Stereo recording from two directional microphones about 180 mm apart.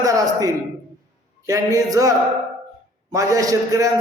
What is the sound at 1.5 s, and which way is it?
A man's voice, 20° right (ahead or behind).